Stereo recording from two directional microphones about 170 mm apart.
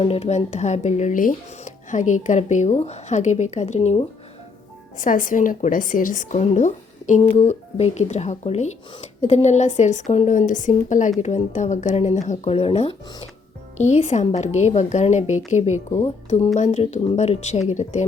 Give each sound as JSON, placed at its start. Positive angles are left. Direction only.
{"t": 0.0, "sound": "speech", "side_deg": 35}
{"t": 4.9, "sound": "a woman's voice", "side_deg": 50}